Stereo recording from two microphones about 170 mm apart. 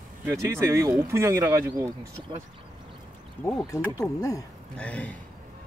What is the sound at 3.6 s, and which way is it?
Speech, 20° left (ahead or behind).